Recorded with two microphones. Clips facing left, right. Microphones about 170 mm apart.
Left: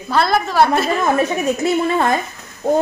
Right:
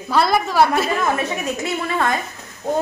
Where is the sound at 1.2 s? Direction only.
30° left (ahead or behind).